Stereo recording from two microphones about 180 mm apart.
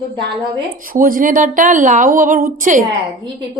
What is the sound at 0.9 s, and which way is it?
Speech, 50° right (ahead or behind).